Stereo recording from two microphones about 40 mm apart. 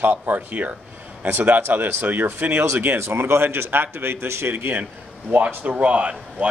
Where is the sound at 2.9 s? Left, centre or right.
Right.